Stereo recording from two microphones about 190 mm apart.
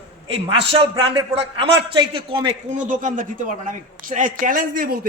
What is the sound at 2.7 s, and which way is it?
A man's voice, 40° right (ahead or behind).